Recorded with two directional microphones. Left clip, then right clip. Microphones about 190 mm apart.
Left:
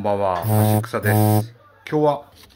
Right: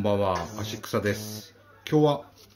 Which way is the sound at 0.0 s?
15° right (ahead or behind).